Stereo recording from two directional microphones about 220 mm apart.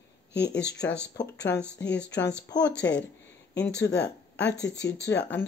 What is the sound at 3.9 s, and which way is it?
Speech, 50° left (ahead or behind).